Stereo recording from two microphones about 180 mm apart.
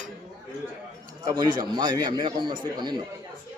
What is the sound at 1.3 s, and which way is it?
A man's voice, 20° right (ahead or behind).